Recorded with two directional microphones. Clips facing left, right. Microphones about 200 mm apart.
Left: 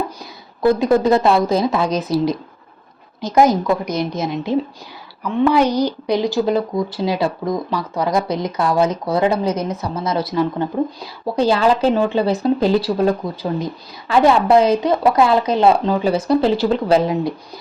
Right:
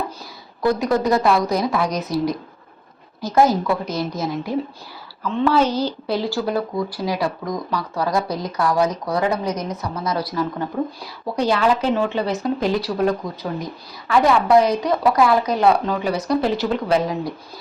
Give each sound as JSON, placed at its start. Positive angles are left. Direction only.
{"t": 0.6, "sound": "a woman's voice", "side_deg": 25}
{"t": 3.2, "sound": "a woman's voice", "side_deg": 20}